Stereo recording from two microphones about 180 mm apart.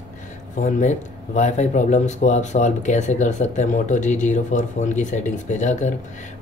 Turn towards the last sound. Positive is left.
turn(degrees=40)  # may be behind; listen again after turning